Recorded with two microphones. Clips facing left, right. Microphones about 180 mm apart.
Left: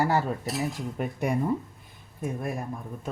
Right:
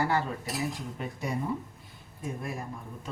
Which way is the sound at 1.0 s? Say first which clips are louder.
Left 7 dB; 50° left (ahead or behind).